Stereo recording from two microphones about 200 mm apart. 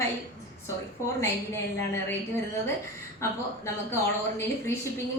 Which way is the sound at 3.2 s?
15° left (ahead or behind).